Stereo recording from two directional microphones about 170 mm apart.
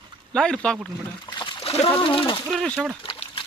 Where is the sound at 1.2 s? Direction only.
30° left (ahead or behind).